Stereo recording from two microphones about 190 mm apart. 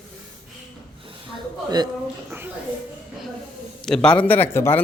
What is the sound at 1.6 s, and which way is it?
Speech, 20° right (ahead or behind).